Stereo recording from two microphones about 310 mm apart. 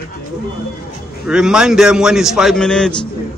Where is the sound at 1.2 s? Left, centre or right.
Centre.